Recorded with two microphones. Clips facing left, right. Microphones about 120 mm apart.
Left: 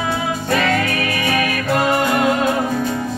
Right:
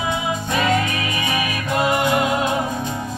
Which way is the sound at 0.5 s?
20° right (ahead or behind).